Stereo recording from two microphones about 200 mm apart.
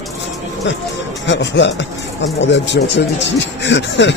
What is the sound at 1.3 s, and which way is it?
Speech, 65° left (ahead or behind).